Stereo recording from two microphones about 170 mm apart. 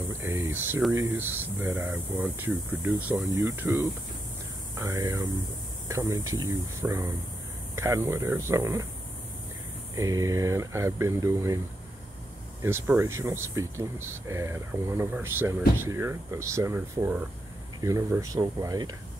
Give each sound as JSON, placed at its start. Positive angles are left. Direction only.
{"t": 0.2, "sound": "speech", "side_deg": -15}
{"t": 9.9, "sound": "speech", "side_deg": -20}
{"t": 12.6, "sound": "speech", "side_deg": -15}